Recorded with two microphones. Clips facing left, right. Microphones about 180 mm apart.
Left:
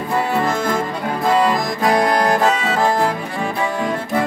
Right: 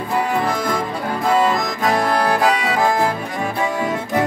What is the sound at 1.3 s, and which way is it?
Accordion, 5° right (ahead or behind).